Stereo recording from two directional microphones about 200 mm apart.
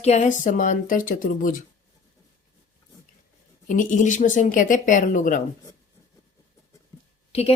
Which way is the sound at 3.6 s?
40° left (ahead or behind).